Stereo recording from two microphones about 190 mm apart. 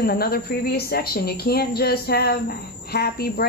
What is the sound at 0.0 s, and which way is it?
Speech, 55° left (ahead or behind).